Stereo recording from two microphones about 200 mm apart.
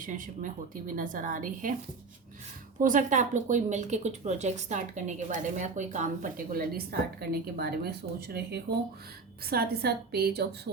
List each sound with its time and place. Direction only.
0.0 s a woman's voice: 40° right (ahead or behind)
2.8 s a woman's voice: 40° right (ahead or behind)